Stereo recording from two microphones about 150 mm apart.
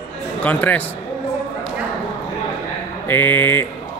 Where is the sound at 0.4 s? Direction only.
10° left (ahead or behind).